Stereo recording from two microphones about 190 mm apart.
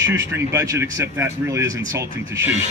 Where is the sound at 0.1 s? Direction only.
15° right (ahead or behind).